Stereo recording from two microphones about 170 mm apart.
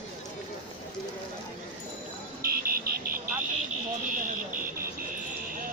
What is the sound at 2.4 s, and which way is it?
Buzzer, 60° right (ahead or behind).